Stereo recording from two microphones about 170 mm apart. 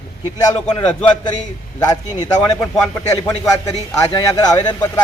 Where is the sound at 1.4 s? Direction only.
25° left (ahead or behind).